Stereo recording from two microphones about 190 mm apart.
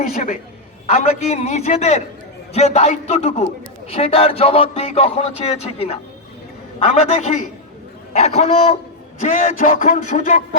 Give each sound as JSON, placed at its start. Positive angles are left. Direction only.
{"t": 0.1, "sound": "speech", "side_deg": 40}